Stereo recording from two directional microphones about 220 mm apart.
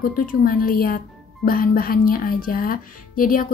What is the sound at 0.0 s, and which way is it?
A woman's voice, 40° left (ahead or behind).